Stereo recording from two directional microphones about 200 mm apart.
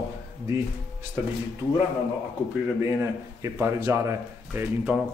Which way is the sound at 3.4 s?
10° right (ahead or behind).